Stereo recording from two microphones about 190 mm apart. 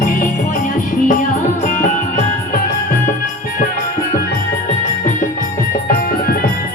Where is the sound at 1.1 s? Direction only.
45° left (ahead or behind).